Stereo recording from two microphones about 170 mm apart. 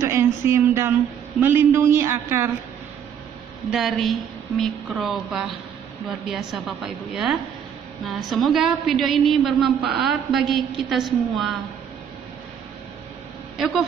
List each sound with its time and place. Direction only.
0.0 s a sound: 15° right (ahead or behind)
1.4 s a man's voice: 10° right (ahead or behind)
3.7 s a woman's voice: centre (ahead or behind)